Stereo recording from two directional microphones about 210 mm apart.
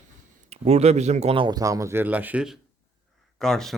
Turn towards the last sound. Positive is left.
turn(degrees=0)  # may be behind; listen again after turning